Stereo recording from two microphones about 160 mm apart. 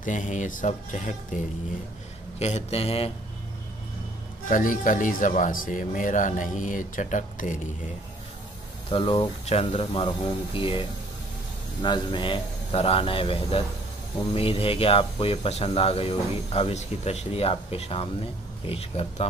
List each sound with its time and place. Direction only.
0.0 s speech: 50° left (ahead or behind)
2.3 s speech: 40° left (ahead or behind)
4.5 s speech: 55° left (ahead or behind)
8.9 s speech: 30° left (ahead or behind)